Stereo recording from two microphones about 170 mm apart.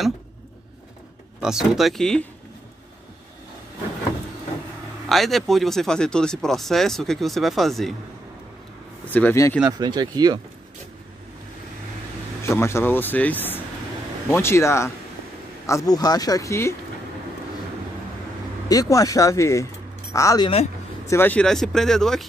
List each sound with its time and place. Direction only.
1.4 s speech: 5° right (ahead or behind)
5.0 s speech: centre (ahead or behind)
9.1 s speech: 15° left (ahead or behind)
9.7 s speech: 25° right (ahead or behind)
12.4 s speech: 15° left (ahead or behind)
18.7 s speech: 20° left (ahead or behind); by 22.2 s 5° left (ahead or behind)